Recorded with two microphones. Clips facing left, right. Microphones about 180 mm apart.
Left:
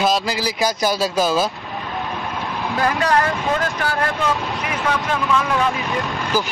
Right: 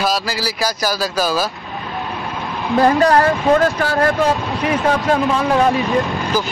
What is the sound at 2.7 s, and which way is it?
Speech, 35° right (ahead or behind).